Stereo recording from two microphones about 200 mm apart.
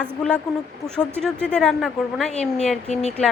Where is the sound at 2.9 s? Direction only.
35° left (ahead or behind).